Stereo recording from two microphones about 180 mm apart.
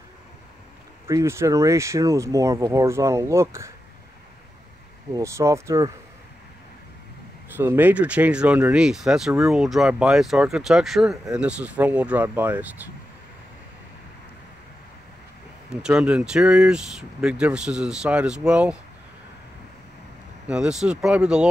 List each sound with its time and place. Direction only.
1.0 s speech: 15° right (ahead or behind)
5.1 s speech: 15° right (ahead or behind)
7.5 s speech: 10° right (ahead or behind)
15.7 s speech: 5° right (ahead or behind)
20.4 s speech: 5° right (ahead or behind)